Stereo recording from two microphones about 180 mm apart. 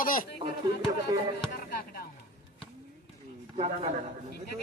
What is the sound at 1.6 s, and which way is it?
Music, 60° left (ahead or behind).